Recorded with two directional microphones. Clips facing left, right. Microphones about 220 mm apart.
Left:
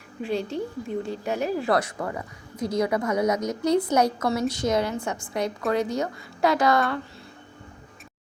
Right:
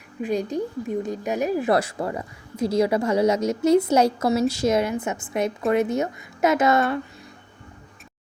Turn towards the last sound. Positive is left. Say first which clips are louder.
# right 2 dB
turn(degrees=-25)  # may be behind; listen again after turning